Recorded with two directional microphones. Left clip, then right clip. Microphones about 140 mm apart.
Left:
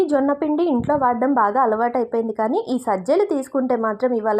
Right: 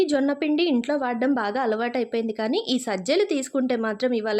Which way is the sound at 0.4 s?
5° left (ahead or behind).